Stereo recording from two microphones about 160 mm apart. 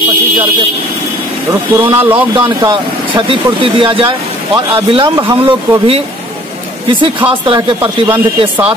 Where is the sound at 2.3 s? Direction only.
30° right (ahead or behind).